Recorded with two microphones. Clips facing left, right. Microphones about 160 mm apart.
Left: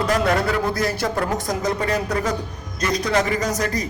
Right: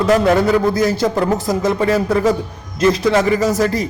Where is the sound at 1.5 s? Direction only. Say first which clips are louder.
Right 6 dB; 25° right (ahead or behind).